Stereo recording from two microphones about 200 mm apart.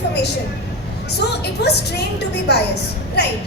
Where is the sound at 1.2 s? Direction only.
60° left (ahead or behind).